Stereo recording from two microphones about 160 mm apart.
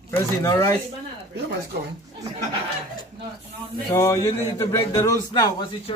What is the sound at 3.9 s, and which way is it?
A man's voice, 20° left (ahead or behind).